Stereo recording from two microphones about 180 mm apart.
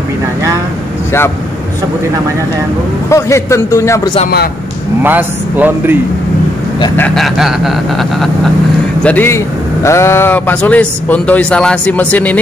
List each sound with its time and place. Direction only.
3.1 s a man's voice: 15° left (ahead or behind)
5.0 s speech: 10° right (ahead or behind)
7.2 s a man's voice: centre (ahead or behind)